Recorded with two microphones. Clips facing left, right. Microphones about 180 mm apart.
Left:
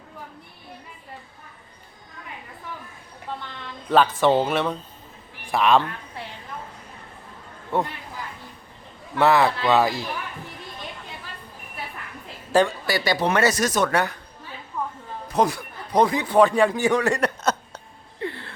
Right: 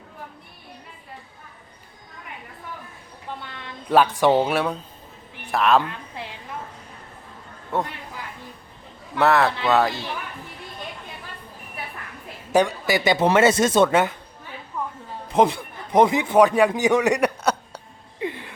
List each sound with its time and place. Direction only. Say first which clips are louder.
3.8 s speech: right 1 dB; 10° right (ahead or behind)
7.7 s a man's voice: left 1 dB; centre (ahead or behind)
9.1 s a man's voice: even; centre (ahead or behind)
12.5 s speech: right 1 dB; 15° right (ahead or behind)
15.3 s a man's voice: right 3 dB; 25° right (ahead or behind)
18.2 s gasp: right 2 dB; 15° right (ahead or behind)